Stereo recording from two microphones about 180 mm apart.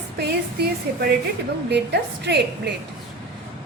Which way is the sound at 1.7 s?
70° right (ahead or behind).